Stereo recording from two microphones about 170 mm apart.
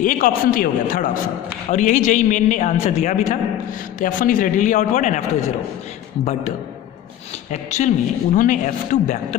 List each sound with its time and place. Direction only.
0.0 s a man's voice: 50° left (ahead or behind)
7.5 s a man's voice: 45° left (ahead or behind)